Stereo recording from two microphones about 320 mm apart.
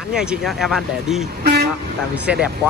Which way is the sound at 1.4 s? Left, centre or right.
Right.